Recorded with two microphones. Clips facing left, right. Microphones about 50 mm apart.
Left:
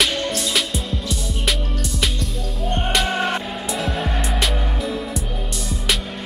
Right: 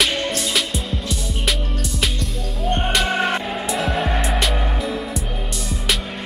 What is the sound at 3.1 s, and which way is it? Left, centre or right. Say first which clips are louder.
Music: right 1 dB; centre.